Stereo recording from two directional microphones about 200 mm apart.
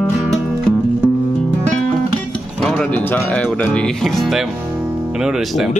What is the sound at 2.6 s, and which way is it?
Speech, 5° left (ahead or behind).